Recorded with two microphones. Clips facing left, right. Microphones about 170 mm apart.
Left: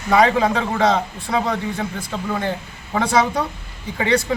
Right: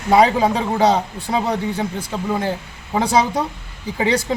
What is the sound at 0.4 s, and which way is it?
Speech, 10° right (ahead or behind).